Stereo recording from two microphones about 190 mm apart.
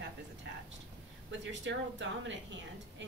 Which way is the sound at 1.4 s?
70° right (ahead or behind).